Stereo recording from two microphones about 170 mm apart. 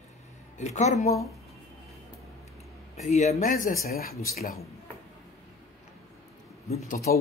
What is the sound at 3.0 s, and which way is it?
Speech, 45° left (ahead or behind).